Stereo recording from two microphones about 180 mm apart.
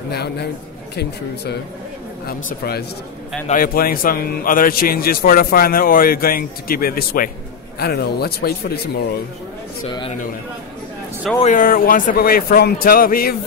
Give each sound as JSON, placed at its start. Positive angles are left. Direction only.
{"t": 0.1, "sound": "a man's voice", "side_deg": 65}
{"t": 11.4, "sound": "a man's voice", "side_deg": 50}